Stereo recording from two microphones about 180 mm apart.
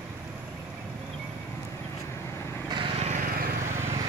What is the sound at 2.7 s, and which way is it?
Vehicle, 30° right (ahead or behind).